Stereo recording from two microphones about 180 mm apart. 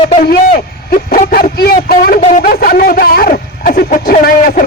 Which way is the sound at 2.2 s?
45° left (ahead or behind).